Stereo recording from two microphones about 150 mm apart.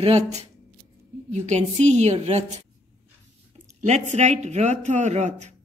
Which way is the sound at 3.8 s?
50° right (ahead or behind).